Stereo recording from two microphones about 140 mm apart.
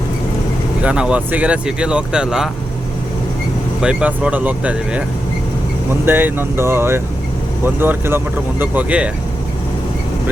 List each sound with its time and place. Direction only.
0.8 s speech: 5° right (ahead or behind)
3.8 s speech: 5° right (ahead or behind)
6.1 s speech: 15° right (ahead or behind)